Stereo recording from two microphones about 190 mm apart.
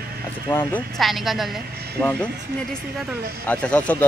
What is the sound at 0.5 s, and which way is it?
Speech, 10° left (ahead or behind).